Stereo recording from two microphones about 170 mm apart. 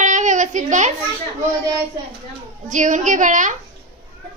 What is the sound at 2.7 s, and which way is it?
Speech, 45° right (ahead or behind).